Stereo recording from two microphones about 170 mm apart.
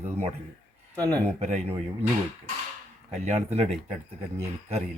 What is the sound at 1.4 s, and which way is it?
Speech, 40° right (ahead or behind).